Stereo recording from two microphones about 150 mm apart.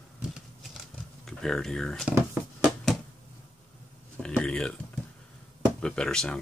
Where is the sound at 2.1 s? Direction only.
20° right (ahead or behind).